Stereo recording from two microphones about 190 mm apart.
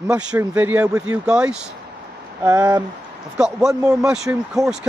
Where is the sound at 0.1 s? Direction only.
10° right (ahead or behind).